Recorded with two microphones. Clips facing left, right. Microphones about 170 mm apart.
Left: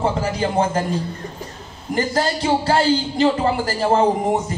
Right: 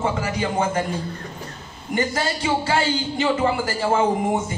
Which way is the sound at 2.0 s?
35° left (ahead or behind).